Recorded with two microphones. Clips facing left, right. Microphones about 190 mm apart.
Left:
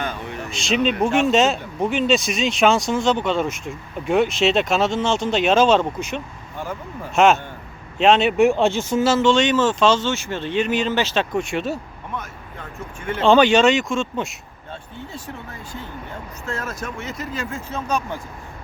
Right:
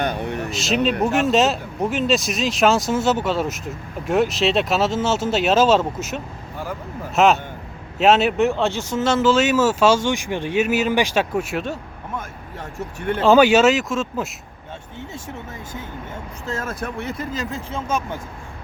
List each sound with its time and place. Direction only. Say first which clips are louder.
0.1 s a sound: right 5 dB; 65° right (ahead or behind)
0.5 s speech: left 1 dB; centre (ahead or behind)
8.4 s speech: left 3 dB; 15° left (ahead or behind)
9.1 s speech: right 2 dB; 5° right (ahead or behind)
13.2 s speech: right 1 dB; 5° right (ahead or behind)
16.6 s speech: right 4 dB; 55° right (ahead or behind)
17.4 s speech: right 1 dB; 30° right (ahead or behind)